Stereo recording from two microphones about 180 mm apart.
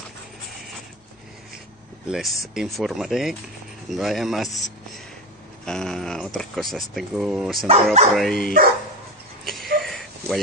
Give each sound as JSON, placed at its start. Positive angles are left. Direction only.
{"t": 2.0, "sound": "speech", "side_deg": 0}
{"t": 5.7, "sound": "speech", "side_deg": 5}
{"t": 7.6, "sound": "speech", "side_deg": -35}
{"t": 8.2, "sound": "speech", "side_deg": 5}
{"t": 9.4, "sound": "a sound", "side_deg": 0}